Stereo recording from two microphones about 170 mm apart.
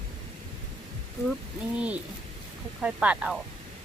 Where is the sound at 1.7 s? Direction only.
10° right (ahead or behind).